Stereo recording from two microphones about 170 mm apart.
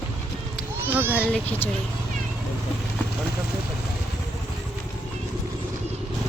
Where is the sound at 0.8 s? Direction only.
10° right (ahead or behind).